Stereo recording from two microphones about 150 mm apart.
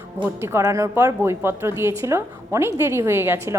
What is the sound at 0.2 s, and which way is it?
A woman's voice, 15° right (ahead or behind).